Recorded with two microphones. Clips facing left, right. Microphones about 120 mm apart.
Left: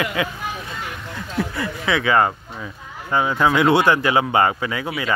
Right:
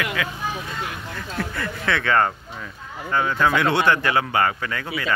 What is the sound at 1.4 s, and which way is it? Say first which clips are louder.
Speech: left 3 dB; 10° left (ahead or behind).